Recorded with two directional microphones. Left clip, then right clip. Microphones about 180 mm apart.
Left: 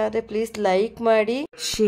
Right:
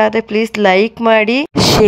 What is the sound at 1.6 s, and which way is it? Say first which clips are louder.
Speech: right 16 dB; 55° right (ahead or behind).